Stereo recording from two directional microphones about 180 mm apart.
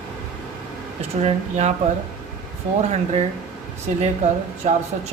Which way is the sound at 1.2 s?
40° right (ahead or behind).